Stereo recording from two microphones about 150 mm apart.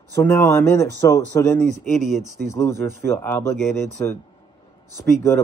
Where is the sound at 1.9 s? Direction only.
Centre (ahead or behind).